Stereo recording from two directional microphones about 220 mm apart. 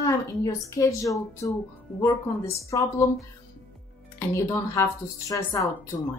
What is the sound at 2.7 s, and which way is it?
Speech, 15° left (ahead or behind).